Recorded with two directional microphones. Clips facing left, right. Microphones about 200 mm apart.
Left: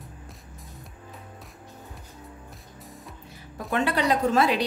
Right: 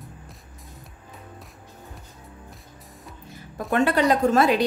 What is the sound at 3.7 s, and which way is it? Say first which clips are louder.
Speech: right 4 dB; 45° right (ahead or behind).